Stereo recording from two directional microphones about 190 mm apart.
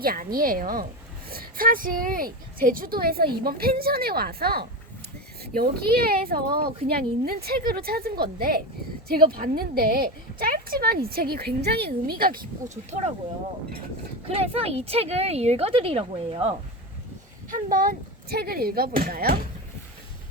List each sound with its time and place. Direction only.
0.0 s a woman's voice: 50° right (ahead or behind)
12.9 s speech: 35° right (ahead or behind)
14.3 s speech: 30° right (ahead or behind)
17.5 s a woman's voice: 50° right (ahead or behind)